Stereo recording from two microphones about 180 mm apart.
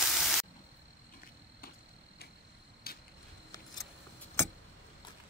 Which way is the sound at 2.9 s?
55° left (ahead or behind).